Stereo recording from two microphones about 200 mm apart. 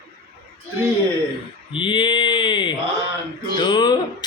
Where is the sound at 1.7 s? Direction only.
25° left (ahead or behind).